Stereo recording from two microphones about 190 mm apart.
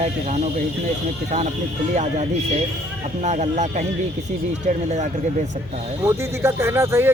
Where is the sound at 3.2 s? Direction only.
40° right (ahead or behind).